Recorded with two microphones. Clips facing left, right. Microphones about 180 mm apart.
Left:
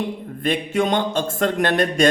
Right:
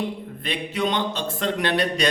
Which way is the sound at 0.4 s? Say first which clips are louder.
Left 5 dB; 50° left (ahead or behind).